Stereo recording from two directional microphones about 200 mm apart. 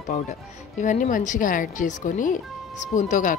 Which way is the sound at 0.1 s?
35° left (ahead or behind).